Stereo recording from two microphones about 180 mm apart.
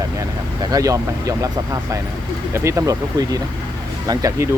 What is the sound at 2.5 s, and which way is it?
Speech, 15° right (ahead or behind).